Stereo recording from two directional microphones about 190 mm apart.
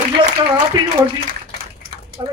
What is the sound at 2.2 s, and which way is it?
Speech, 20° right (ahead or behind).